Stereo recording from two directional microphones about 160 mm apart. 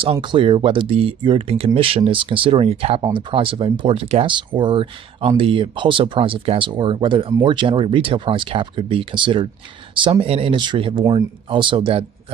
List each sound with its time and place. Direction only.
0.0 s speech: 30° right (ahead or behind)